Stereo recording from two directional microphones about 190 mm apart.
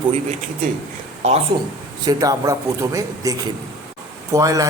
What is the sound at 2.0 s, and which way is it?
A man's voice, 20° right (ahead or behind).